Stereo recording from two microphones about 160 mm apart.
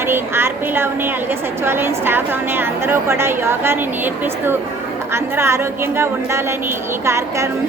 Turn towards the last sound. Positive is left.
turn(degrees=-15)  # may be behind; listen again after turning